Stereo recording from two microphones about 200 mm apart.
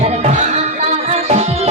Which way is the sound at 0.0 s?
35° right (ahead or behind).